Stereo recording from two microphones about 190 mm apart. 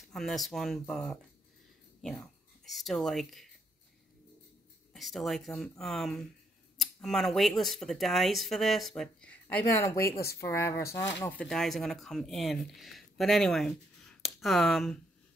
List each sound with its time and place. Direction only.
0.1 s speech: centre (ahead or behind)
4.9 s speech: centre (ahead or behind)